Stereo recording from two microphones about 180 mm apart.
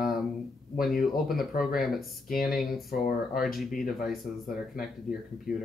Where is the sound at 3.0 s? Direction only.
55° left (ahead or behind).